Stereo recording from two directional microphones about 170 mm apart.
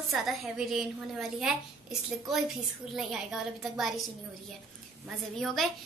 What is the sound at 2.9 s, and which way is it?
A woman's voice, centre (ahead or behind).